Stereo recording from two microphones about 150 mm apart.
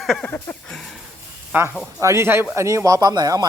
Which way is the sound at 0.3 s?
15° left (ahead or behind).